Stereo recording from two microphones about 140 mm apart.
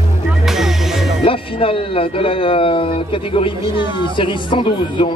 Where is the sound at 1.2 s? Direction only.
40° left (ahead or behind).